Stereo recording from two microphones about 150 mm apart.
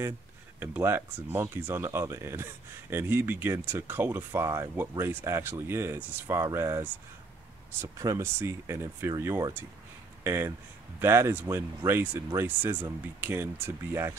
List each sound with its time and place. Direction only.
0.6 s speech: 15° right (ahead or behind)